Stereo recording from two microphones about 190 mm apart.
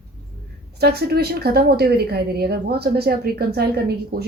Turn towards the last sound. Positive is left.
turn(degrees=-55)  # may be behind; listen again after turning